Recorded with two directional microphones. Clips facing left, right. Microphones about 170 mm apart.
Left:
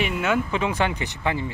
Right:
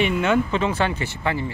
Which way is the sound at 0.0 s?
5° left (ahead or behind).